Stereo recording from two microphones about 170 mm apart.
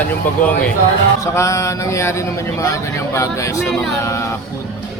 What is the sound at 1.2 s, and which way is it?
A man's voice, 15° left (ahead or behind).